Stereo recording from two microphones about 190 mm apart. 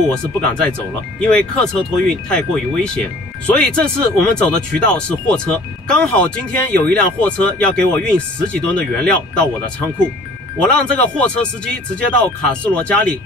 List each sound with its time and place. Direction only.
0.1 s speech: 5° left (ahead or behind)
10.6 s speech: 5° left (ahead or behind)